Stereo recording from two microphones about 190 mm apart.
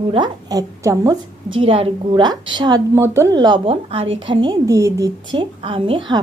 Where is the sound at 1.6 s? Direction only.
30° right (ahead or behind).